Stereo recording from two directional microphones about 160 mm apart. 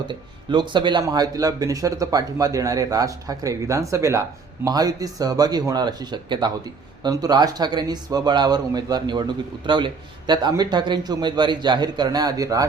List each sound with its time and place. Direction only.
0.1 s speech: 30° right (ahead or behind)